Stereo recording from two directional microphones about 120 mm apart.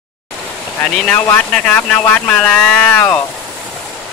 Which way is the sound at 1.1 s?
15° left (ahead or behind).